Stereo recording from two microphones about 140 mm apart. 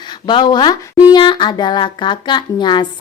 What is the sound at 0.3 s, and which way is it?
A woman's voice, 35° left (ahead or behind).